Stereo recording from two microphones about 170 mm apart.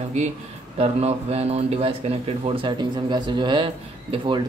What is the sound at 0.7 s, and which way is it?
Speech, 35° right (ahead or behind).